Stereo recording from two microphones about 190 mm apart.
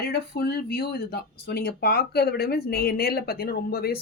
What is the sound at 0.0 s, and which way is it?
Speech, 55° left (ahead or behind).